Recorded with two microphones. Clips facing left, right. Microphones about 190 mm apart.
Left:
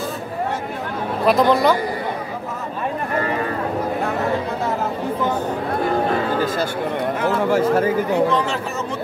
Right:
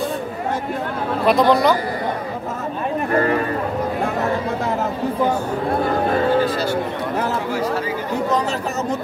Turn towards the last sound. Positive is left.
turn(degrees=50)  # may be behind; listen again after turning